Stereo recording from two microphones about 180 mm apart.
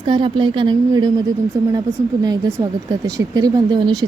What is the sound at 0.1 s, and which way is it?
Speech, 25° right (ahead or behind).